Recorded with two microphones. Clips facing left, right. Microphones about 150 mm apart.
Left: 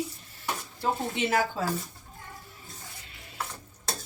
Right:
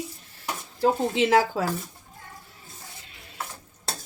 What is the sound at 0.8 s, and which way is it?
Speech, 90° right.